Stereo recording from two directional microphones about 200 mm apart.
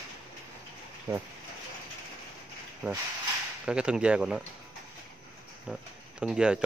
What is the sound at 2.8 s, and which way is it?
Speech, 5° right (ahead or behind).